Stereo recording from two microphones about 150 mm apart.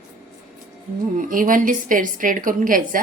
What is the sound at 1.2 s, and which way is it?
A woman's voice, 65° right (ahead or behind).